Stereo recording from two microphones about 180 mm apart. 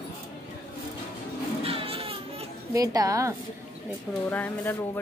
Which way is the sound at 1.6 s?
30° right (ahead or behind).